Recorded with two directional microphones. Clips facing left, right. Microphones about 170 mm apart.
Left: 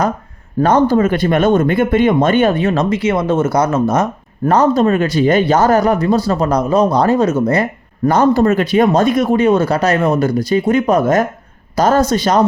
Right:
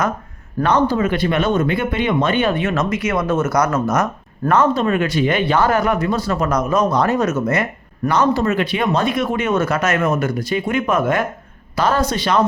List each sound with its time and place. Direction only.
0.6 s speech: 45° left (ahead or behind)
8.1 s speech: 50° left (ahead or behind)